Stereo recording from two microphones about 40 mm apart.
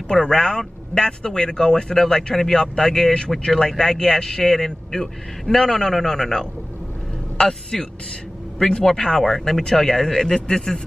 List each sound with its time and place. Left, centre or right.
0.1 s a man's voice: centre
8.8 s a man's voice: centre